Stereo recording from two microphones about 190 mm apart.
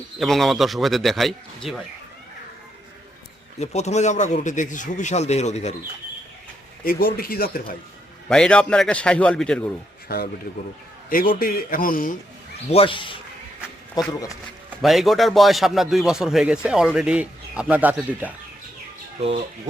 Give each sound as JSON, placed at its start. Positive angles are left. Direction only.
{"t": 0.2, "sound": "a man's voice", "side_deg": 0}
{"t": 3.6, "sound": "speech", "side_deg": 35}
{"t": 6.8, "sound": "a man's voice", "side_deg": 50}
{"t": 8.3, "sound": "a man's voice", "side_deg": 5}
{"t": 10.1, "sound": "a man's voice", "side_deg": 55}
{"t": 12.7, "sound": "speech", "side_deg": 25}
{"t": 14.8, "sound": "a man's voice", "side_deg": 0}